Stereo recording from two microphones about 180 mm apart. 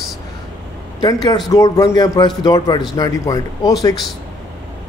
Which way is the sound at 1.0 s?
25° left (ahead or behind).